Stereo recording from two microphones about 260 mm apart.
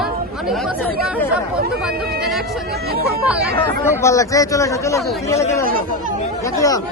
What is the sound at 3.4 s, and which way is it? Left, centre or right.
Speech, right.